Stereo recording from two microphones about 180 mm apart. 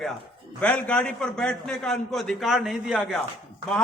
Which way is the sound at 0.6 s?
5° left (ahead or behind).